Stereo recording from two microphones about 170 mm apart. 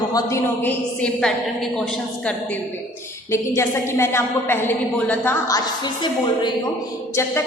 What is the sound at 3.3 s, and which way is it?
A woman's voice, 15° left (ahead or behind).